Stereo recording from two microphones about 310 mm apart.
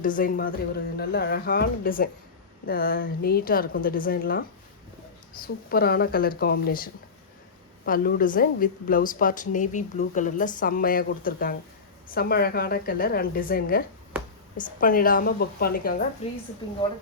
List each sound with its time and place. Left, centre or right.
0.0 s a woman's voice: left
5.6 s a woman's voice: left